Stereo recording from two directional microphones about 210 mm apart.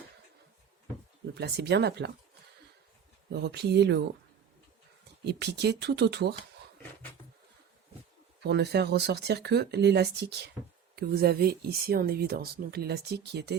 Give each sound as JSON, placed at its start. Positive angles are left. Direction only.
{"t": 1.3, "sound": "speech", "side_deg": -50}
{"t": 3.2, "sound": "speech", "side_deg": -50}
{"t": 5.2, "sound": "speech", "side_deg": -55}
{"t": 8.4, "sound": "speech", "side_deg": -50}